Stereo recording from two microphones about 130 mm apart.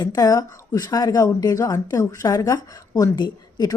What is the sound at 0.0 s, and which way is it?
A woman's voice, 30° left (ahead or behind).